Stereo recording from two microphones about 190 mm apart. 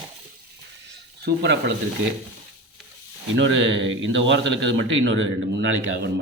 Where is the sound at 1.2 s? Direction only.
60° right (ahead or behind).